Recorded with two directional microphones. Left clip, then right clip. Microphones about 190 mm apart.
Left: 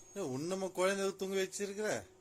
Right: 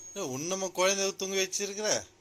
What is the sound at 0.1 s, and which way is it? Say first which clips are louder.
Speech: right 5 dB; 20° left (ahead or behind).